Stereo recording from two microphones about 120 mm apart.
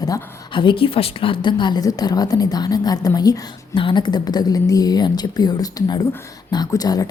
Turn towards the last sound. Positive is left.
turn(degrees=35)  # may be behind; listen again after turning